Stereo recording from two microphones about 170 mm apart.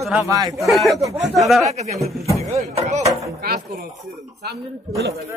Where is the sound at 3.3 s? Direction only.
65° right (ahead or behind).